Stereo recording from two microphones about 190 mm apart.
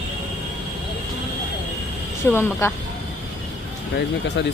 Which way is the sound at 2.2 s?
15° left (ahead or behind).